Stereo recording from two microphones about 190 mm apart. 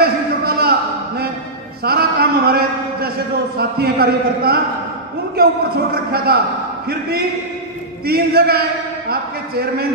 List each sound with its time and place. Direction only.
0.0 s a sound: 55° right (ahead or behind)
3.5 s a man's voice: 55° right (ahead or behind)
6.1 s a man's voice: 55° right (ahead or behind)